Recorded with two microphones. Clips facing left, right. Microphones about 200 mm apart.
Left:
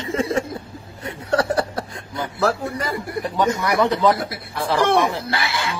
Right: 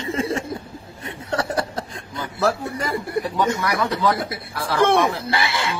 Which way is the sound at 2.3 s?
25° right (ahead or behind).